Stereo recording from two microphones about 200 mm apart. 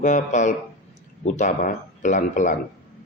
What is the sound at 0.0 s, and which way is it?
Speech, 40° left (ahead or behind).